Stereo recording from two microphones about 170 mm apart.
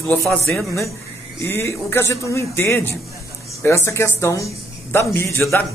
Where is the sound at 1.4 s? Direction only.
15° left (ahead or behind).